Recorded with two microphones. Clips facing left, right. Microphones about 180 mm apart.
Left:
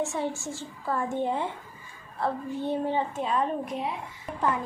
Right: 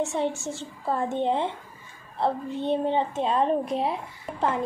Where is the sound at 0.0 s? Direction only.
20° right (ahead or behind).